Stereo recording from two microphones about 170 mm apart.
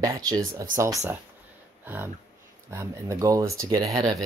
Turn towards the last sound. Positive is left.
turn(degrees=-20)  # may be behind; listen again after turning